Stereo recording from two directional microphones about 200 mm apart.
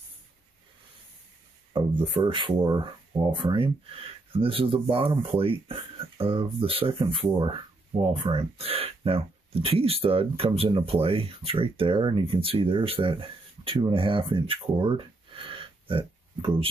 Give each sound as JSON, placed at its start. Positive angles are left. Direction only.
{"t": 1.7, "sound": "speech", "side_deg": -25}